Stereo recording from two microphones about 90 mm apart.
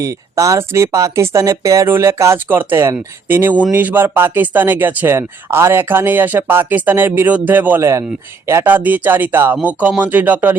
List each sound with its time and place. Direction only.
0.0 s speech: 40° right (ahead or behind); by 7.8 s 20° right (ahead or behind)
7.8 s speech: 35° right (ahead or behind); by 10.5 s 20° right (ahead or behind)